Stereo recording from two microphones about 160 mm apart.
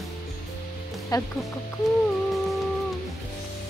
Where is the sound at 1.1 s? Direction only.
25° left (ahead or behind).